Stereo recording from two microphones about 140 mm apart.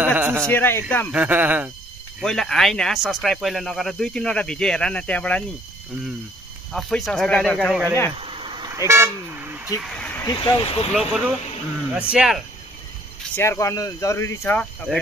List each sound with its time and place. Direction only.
0.2 s a sound: 15° right (ahead or behind)
0.5 s speech: 15° left (ahead or behind)
1.1 s speech: 10° right (ahead or behind)
2.2 s speech: 5° left (ahead or behind)
6.7 s speech: centre (ahead or behind)
7.8 s speech: 15° left (ahead or behind)
8.2 s cricket: 40° right (ahead or behind)
8.7 s vehicle: 20° right (ahead or behind)
9.8 s a sound: 5° left (ahead or behind)
10.2 s speech: 35° left (ahead or behind)
10.9 s speech: 5° right (ahead or behind)
13.4 s speech: 20° left (ahead or behind)